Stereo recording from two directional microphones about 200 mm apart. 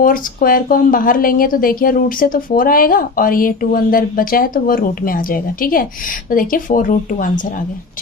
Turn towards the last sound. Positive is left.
turn(degrees=40)  # may be behind; listen again after turning